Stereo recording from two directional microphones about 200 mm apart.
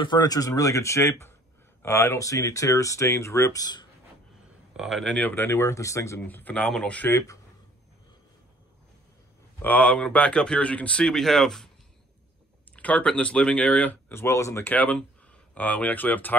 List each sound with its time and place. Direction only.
0.0 s speech: 20° left (ahead or behind)
4.7 s speech: centre (ahead or behind)
9.6 s speech: 5° left (ahead or behind)
12.7 s speech: 5° left (ahead or behind)